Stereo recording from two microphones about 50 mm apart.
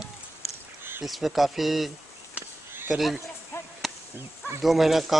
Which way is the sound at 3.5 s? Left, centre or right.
Left.